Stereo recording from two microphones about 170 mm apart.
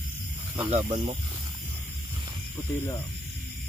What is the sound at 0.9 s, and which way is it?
Speech, 40° right (ahead or behind).